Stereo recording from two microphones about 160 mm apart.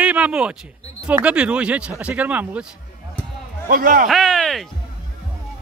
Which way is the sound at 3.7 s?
60° right (ahead or behind).